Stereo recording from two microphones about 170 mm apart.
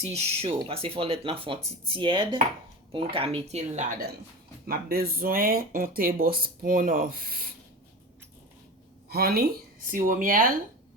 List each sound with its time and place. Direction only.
0.0 s speech: 40° right (ahead or behind)
4.6 s speech: 65° right (ahead or behind)
9.0 s speech: 65° right (ahead or behind)